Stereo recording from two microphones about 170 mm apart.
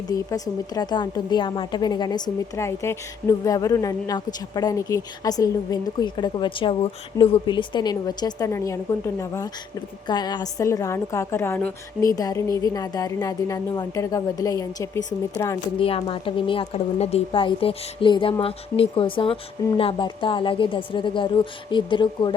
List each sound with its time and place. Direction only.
0.1 s a woman's voice: 20° left (ahead or behind)
15.8 s a woman's voice: 35° left (ahead or behind)